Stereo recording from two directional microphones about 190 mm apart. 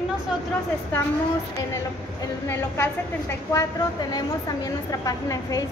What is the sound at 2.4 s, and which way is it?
A woman's voice, 15° left (ahead or behind).